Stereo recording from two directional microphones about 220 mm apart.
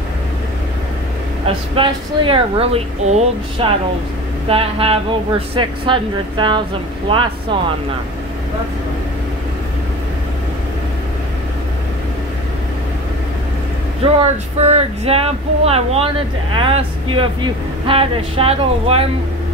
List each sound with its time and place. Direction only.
1.8 s speech: 25° right (ahead or behind)
14.0 s speech: 30° right (ahead or behind)